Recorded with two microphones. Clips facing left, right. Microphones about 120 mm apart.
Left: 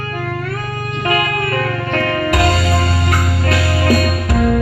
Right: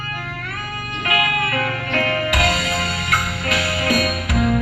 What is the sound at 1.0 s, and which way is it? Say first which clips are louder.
Music: left 4 dB; 35° left (ahead or behind).